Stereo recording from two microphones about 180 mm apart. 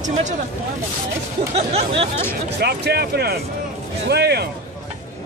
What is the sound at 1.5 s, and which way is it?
Speech, 35° right (ahead or behind).